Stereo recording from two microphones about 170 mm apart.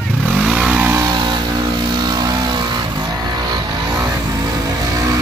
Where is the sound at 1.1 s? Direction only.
25° right (ahead or behind).